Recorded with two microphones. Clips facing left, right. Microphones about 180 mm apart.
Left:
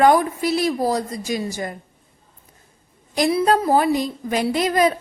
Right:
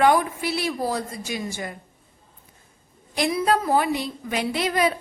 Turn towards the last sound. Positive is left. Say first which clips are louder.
# left 4 dB
turn(degrees=40)  # may be behind; listen again after turning